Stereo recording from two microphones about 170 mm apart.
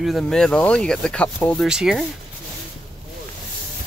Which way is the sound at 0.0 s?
Centre (ahead or behind).